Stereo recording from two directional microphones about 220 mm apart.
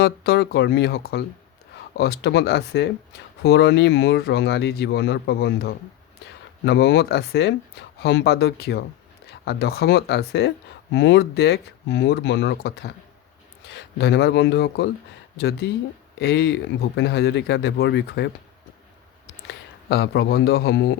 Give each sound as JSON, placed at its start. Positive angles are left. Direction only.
{"t": 0.0, "sound": "speech", "side_deg": 50}
{"t": 19.5, "sound": "speech", "side_deg": 45}